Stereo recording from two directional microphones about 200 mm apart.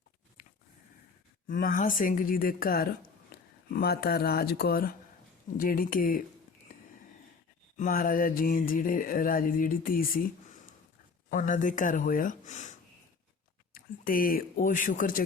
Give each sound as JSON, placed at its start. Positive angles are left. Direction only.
{"t": 1.5, "sound": "mantra", "side_deg": 40}
{"t": 3.3, "sound": "a sound", "side_deg": 50}
{"t": 3.7, "sound": "mantra", "side_deg": 50}
{"t": 7.8, "sound": "mantra", "side_deg": 45}
{"t": 11.3, "sound": "speech", "side_deg": 40}
{"t": 13.7, "sound": "speech", "side_deg": 45}